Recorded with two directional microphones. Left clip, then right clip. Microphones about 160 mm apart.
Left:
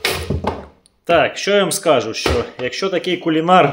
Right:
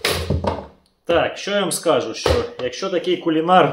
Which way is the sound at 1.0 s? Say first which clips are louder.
Left 4 dB; 65° left (ahead or behind).